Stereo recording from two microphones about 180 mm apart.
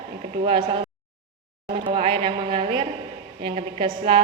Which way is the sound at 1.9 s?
30° right (ahead or behind).